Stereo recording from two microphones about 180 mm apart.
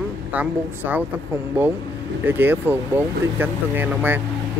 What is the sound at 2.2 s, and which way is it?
Speech, 10° right (ahead or behind).